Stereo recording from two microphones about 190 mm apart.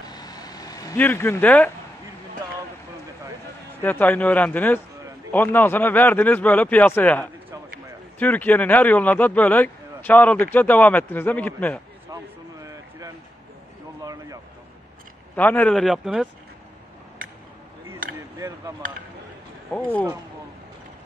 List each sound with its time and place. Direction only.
0.1 s vehicle: 20° left (ahead or behind)
3.8 s speech: 10° left (ahead or behind)
14.0 s a sound: 20° right (ahead or behind)
15.3 s speech: 10° left (ahead or behind)
19.7 s speech: 10° left (ahead or behind)